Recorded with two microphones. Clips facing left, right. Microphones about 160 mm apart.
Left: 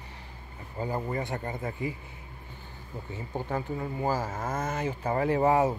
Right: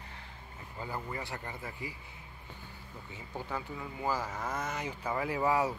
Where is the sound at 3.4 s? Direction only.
45° left (ahead or behind).